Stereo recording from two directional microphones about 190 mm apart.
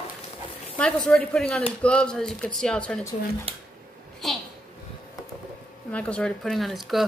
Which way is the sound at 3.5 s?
30° right (ahead or behind).